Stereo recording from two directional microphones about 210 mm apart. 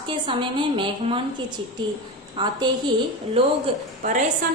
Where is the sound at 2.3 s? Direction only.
20° right (ahead or behind).